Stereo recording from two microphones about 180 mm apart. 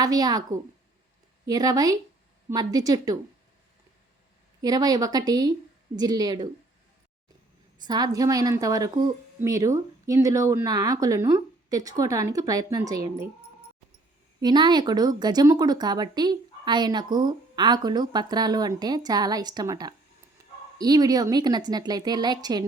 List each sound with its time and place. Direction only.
0.0 s a woman's voice: 20° right (ahead or behind)
4.6 s a woman's voice: 20° right (ahead or behind)
7.8 s a woman's voice: 20° right (ahead or behind)
14.4 s a woman's voice: 25° right (ahead or behind)